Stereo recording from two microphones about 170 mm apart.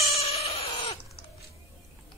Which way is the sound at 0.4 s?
35° left (ahead or behind).